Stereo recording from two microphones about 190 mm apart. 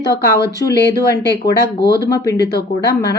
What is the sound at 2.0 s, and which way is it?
Speech, 20° left (ahead or behind).